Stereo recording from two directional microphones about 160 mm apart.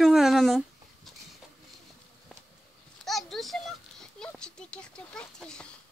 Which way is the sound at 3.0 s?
Centre (ahead or behind).